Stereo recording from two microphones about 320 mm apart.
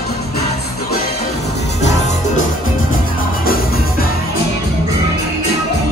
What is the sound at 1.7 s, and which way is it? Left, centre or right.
Music, left.